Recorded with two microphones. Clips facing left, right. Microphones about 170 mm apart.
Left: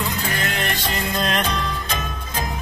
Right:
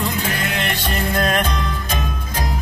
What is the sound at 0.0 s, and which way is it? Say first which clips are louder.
Music: right 2 dB; 60° right (ahead or behind).